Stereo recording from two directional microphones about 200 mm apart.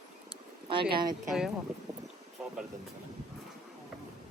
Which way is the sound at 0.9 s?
20° right (ahead or behind).